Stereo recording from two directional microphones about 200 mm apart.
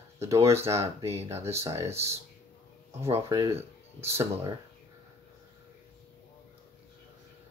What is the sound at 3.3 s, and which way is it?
Speech, 15° right (ahead or behind).